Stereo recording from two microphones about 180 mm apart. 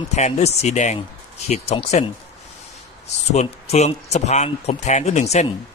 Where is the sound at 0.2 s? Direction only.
40° left (ahead or behind).